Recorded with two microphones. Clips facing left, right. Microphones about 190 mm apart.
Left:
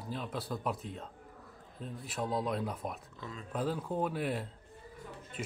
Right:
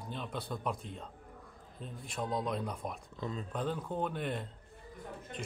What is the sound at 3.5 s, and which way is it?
Speech, 5° left (ahead or behind).